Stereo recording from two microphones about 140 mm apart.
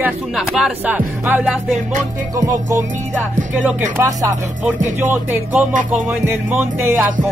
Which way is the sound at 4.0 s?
25° right (ahead or behind).